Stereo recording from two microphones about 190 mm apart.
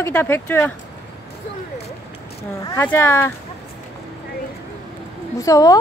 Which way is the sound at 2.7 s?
10° left (ahead or behind).